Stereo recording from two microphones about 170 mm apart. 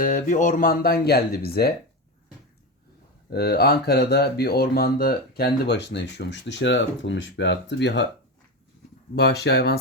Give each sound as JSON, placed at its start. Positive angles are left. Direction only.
{"t": 0.0, "sound": "speech", "side_deg": 50}
{"t": 3.2, "sound": "speech", "side_deg": 65}
{"t": 9.1, "sound": "speech", "side_deg": 75}